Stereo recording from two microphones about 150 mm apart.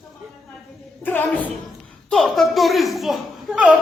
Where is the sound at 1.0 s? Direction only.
10° left (ahead or behind).